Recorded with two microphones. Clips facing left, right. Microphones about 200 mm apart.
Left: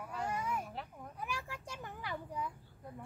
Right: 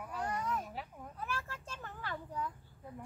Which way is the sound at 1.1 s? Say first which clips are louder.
Right 1 dB; 15° left (ahead or behind).